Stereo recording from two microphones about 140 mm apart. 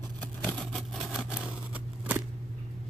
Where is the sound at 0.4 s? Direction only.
5° left (ahead or behind); by 2.2 s 10° right (ahead or behind).